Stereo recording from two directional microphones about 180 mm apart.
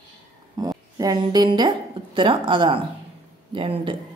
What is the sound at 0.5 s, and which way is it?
A woman's voice, 20° right (ahead or behind).